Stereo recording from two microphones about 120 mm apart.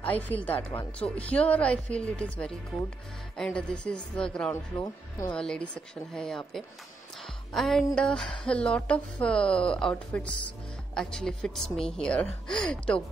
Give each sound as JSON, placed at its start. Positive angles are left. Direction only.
{"t": 0.0, "sound": "music", "side_deg": 15}
{"t": 4.7, "sound": "speech", "side_deg": 30}
{"t": 5.3, "sound": "a woman's voice", "side_deg": 5}
{"t": 7.2, "sound": "music", "side_deg": 0}
{"t": 11.0, "sound": "a woman's voice", "side_deg": 5}